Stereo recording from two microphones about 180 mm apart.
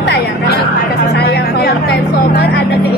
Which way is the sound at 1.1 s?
60° left (ahead or behind).